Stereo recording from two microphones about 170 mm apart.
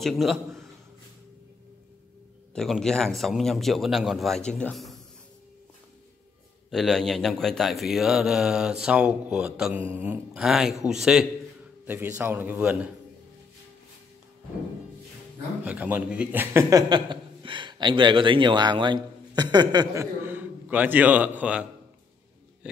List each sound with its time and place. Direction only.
0.0 s a man's voice: centre (ahead or behind)
2.5 s a man's voice: 5° left (ahead or behind)
6.7 s a man's voice: centre (ahead or behind)
15.6 s a man's voice: 10° right (ahead or behind)
16.9 s speech: 30° right (ahead or behind); by 21.6 s 5° right (ahead or behind)